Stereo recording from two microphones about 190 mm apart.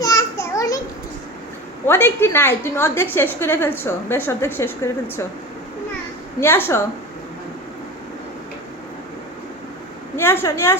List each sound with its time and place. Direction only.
0.0 s a sound: 15° left (ahead or behind)
1.9 s a woman's voice: 10° left (ahead or behind)
6.4 s a woman's voice: 10° left (ahead or behind)
10.2 s a woman's voice: 10° left (ahead or behind)